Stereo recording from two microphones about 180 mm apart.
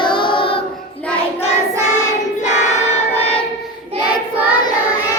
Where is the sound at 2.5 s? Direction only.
40° left (ahead or behind).